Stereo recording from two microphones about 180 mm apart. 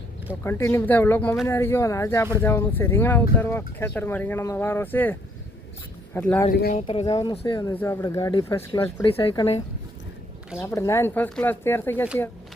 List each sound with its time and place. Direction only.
0.4 s speech: 15° left (ahead or behind)
6.1 s speech: 10° left (ahead or behind)
6.5 s speech: 55° left (ahead or behind)
6.7 s speech: 35° left (ahead or behind)
7.0 s speech: 20° left (ahead or behind)
7.7 s speech: 15° left (ahead or behind)
9.0 s speech: 30° left (ahead or behind)
10.6 s speech: 15° left (ahead or behind)